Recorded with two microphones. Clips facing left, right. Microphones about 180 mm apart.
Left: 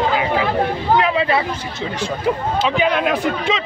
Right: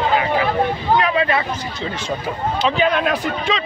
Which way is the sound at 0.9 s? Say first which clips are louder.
Left 1 dB; 20° left (ahead or behind).